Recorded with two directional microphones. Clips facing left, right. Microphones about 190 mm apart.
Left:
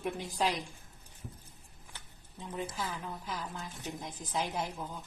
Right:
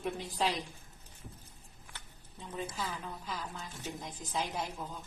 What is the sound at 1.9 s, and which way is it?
A woman's voice, 15° left (ahead or behind).